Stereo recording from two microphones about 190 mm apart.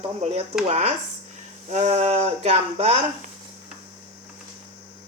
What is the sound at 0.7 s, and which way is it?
Speech, 35° right (ahead or behind).